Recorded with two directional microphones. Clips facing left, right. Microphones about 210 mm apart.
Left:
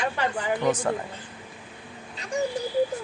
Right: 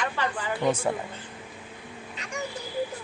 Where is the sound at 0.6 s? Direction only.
10° right (ahead or behind).